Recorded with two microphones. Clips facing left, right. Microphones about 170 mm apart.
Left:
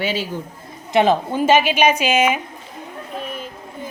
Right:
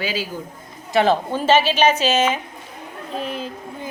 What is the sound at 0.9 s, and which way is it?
A woman's voice, 15° left (ahead or behind).